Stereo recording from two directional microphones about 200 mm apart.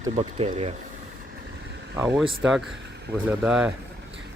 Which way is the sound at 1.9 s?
5° right (ahead or behind).